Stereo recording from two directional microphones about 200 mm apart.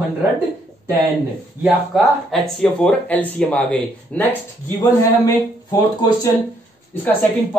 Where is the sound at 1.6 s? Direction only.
Centre (ahead or behind).